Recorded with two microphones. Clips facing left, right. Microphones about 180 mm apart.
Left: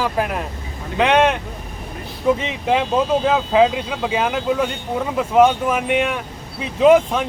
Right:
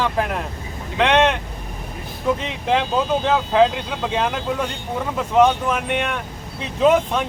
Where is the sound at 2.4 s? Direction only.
5° left (ahead or behind).